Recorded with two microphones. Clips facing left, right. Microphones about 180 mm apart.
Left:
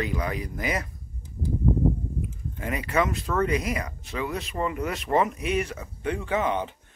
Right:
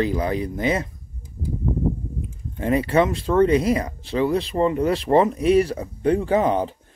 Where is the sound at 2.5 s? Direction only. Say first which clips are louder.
Right 8 dB; 30° right (ahead or behind).